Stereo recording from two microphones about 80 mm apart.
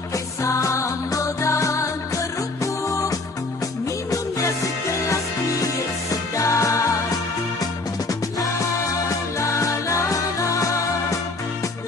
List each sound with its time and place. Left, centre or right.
0.4 s music: left
6.3 s music: left
8.1 s music: left